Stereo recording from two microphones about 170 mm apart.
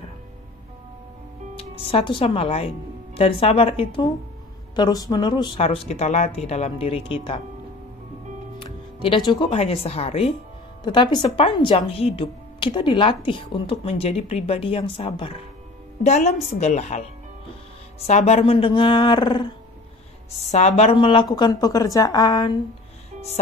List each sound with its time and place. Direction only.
1.6 s speech: 35° left (ahead or behind)
8.5 s speech: 30° left (ahead or behind)
16.0 s speech: 45° left (ahead or behind)
18.0 s speech: 40° left (ahead or behind)
20.5 s speech: 40° left (ahead or behind); by 22.5 s 25° left (ahead or behind)